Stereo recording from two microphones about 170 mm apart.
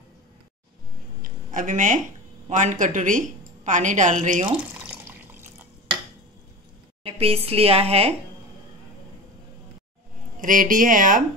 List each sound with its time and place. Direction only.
1.2 s a sound: 50° right (ahead or behind)
2.5 s a woman's voice: 50° right (ahead or behind)
4.8 s water: 10° right (ahead or behind)
7.0 s a woman's voice: 35° right (ahead or behind)
10.4 s a woman's voice: 50° right (ahead or behind)